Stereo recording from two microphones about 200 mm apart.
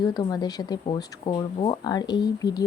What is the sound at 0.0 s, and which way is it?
Speech, 20° left (ahead or behind).